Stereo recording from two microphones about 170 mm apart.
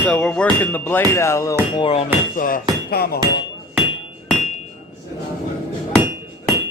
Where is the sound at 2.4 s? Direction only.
60° left (ahead or behind).